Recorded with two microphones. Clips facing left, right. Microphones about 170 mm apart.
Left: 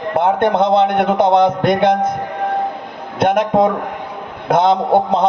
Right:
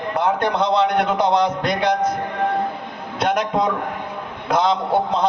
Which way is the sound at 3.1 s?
55° left (ahead or behind).